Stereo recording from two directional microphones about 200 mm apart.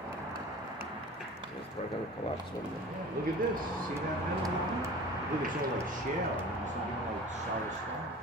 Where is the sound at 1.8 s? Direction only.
35° left (ahead or behind).